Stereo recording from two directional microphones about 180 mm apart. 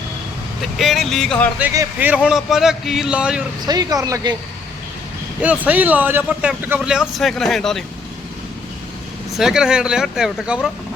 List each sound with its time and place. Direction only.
0.8 s speech: centre (ahead or behind)
1.6 s speech: 15° right (ahead or behind)
3.7 s speech: 20° right (ahead or behind)
5.4 s speech: 10° right (ahead or behind)
9.4 s speech: 5° right (ahead or behind)